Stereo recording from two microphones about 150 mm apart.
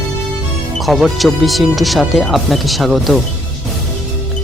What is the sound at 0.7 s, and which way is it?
Speech, centre (ahead or behind).